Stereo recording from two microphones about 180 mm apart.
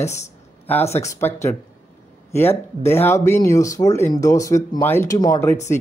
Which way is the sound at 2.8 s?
15° left (ahead or behind).